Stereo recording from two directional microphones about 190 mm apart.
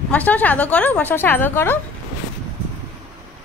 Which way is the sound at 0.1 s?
10° left (ahead or behind).